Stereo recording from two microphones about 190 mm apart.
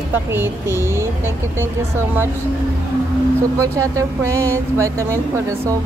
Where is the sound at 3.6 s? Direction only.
15° right (ahead or behind).